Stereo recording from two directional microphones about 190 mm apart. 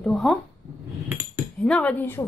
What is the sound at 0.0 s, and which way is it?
Speech, centre (ahead or behind).